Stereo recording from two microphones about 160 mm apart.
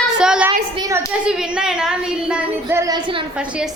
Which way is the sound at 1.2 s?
5° right (ahead or behind).